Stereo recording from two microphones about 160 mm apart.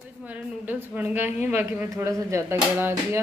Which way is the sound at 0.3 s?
10° right (ahead or behind).